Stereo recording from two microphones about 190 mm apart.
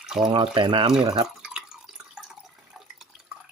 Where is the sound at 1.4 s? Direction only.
5° right (ahead or behind).